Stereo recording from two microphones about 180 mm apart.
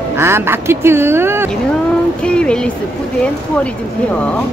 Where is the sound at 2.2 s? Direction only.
5° left (ahead or behind).